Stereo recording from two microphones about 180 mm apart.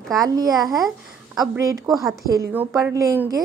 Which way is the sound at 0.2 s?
20° right (ahead or behind).